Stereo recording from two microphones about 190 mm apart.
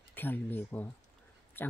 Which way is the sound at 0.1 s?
10° left (ahead or behind).